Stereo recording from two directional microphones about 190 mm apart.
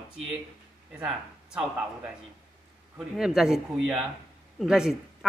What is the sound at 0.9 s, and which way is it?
Speech, 5° right (ahead or behind).